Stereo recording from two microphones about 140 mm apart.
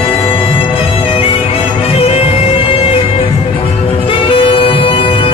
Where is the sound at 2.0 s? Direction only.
45° left (ahead or behind).